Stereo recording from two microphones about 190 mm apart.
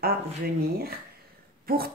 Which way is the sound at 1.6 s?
50° right (ahead or behind).